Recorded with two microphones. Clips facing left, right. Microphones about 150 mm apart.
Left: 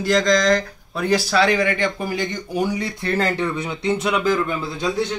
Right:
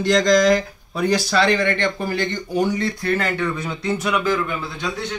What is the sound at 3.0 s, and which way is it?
Speech, 30° left (ahead or behind).